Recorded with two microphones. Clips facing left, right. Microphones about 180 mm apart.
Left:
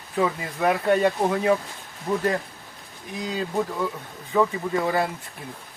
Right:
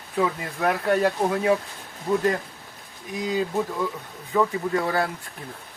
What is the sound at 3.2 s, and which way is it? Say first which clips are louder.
Speech: right 2 dB; 5° right (ahead or behind).